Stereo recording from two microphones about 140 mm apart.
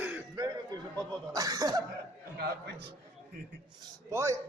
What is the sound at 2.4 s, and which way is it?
Speech, 90° right.